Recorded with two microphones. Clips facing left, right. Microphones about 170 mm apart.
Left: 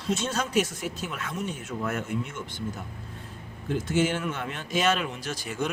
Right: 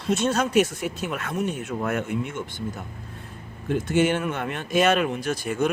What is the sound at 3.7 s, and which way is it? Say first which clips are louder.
Speech: right 4 dB; 60° right (ahead or behind).